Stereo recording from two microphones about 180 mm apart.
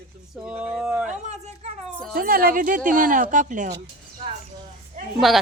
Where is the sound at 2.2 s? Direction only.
55° right (ahead or behind).